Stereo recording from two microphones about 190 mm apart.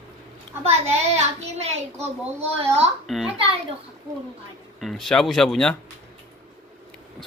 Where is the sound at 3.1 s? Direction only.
Centre (ahead or behind).